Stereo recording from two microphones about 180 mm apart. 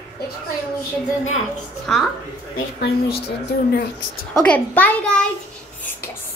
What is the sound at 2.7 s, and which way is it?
A woman's voice, 65° left (ahead or behind).